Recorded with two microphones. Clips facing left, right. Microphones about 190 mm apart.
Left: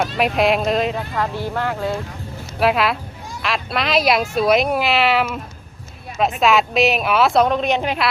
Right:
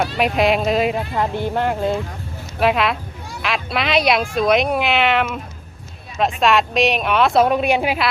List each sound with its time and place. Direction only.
0.0 s speech: centre (ahead or behind)
0.9 s speech: 20° right (ahead or behind)
2.6 s speech: centre (ahead or behind)
6.4 s speech: 5° left (ahead or behind)